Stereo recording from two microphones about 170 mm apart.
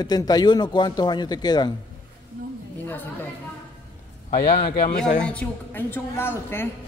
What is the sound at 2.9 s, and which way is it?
Chatter, 10° left (ahead or behind).